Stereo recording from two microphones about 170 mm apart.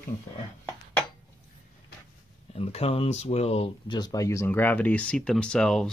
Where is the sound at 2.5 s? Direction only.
35° left (ahead or behind).